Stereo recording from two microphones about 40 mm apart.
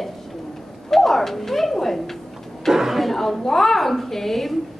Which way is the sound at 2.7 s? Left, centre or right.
Centre.